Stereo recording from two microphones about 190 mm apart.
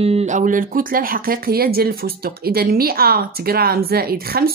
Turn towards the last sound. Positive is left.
turn(degrees=-55)  # may be behind; listen again after turning